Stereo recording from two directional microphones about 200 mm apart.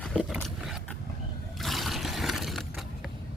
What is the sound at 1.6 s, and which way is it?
Vehicle, centre (ahead or behind).